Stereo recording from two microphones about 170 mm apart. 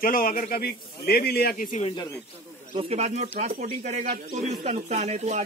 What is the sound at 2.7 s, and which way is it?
Speech, 35° right (ahead or behind).